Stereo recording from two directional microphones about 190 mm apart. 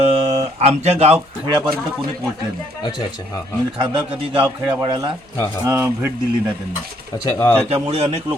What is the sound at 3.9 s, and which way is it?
A man's voice, 25° right (ahead or behind).